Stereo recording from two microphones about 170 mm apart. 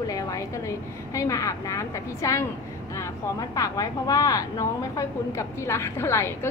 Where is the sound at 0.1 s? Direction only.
20° left (ahead or behind).